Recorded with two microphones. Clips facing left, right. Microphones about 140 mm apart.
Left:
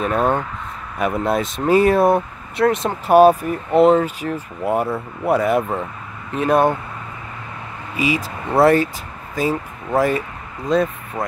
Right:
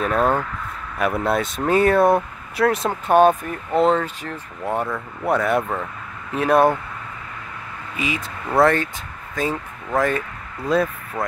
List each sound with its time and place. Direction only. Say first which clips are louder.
0.0 s speech: left 1 dB; centre (ahead or behind)
7.9 s speech: left 6 dB; 5° left (ahead or behind)
10.7 s speech: left 2 dB; 5° right (ahead or behind)
11.2 s speech: left 1 dB; 20° left (ahead or behind)